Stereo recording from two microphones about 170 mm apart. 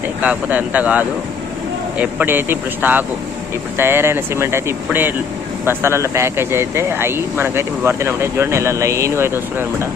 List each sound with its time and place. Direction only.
0.2 s speech: 10° right (ahead or behind)